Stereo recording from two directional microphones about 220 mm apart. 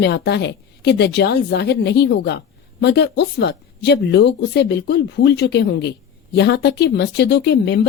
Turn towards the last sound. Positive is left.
turn(degrees=50)  # may be behind; listen again after turning